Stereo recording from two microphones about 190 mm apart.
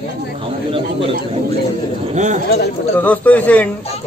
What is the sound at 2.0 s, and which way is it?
Speech, 40° right (ahead or behind).